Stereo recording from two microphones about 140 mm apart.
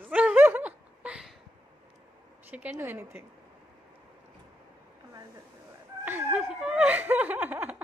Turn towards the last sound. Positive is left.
turn(degrees=-10)  # may be behind; listen again after turning